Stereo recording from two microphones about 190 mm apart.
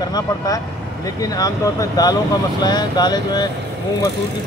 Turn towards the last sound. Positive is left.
turn(degrees=20)  # may be behind; listen again after turning